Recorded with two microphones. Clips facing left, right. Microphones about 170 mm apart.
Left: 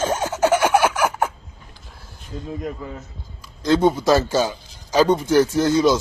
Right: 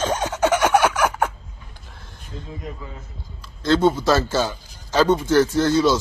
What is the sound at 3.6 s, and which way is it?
A man's voice, 15° left (ahead or behind).